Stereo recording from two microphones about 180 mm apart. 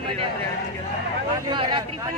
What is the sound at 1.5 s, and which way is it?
Speech, 25° right (ahead or behind).